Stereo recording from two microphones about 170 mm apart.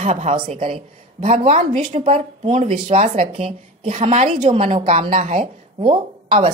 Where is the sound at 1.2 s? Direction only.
50° right (ahead or behind).